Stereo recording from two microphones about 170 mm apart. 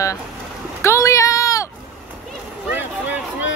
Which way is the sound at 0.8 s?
20° left (ahead or behind).